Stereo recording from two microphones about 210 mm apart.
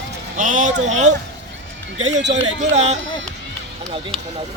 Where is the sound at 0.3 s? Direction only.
35° right (ahead or behind).